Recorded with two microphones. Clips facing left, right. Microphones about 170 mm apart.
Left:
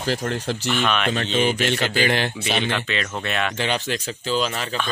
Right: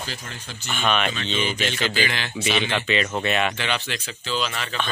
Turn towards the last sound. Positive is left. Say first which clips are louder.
# left 4 dB
turn(degrees=40)  # may be behind; listen again after turning